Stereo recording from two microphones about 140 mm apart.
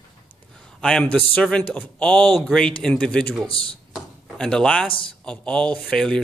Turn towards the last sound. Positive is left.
turn(degrees=5)  # may be behind; listen again after turning